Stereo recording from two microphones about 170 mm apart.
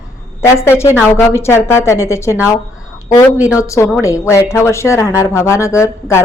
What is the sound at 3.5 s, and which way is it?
Speech, 20° left (ahead or behind).